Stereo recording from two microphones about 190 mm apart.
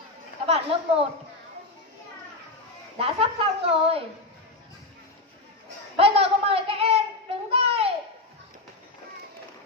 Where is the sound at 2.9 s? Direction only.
30° right (ahead or behind).